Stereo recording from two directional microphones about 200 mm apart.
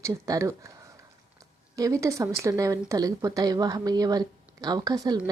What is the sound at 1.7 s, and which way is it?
Speech, 15° right (ahead or behind).